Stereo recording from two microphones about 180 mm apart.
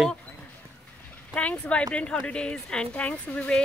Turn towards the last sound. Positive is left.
turn(degrees=5)  # may be behind; listen again after turning